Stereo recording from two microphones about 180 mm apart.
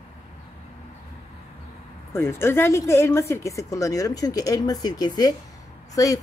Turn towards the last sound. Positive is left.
turn(degrees=20)  # may be behind; listen again after turning